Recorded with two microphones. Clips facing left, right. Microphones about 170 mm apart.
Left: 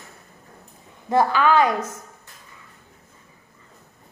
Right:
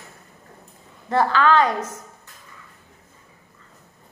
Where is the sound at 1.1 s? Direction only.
15° left (ahead or behind).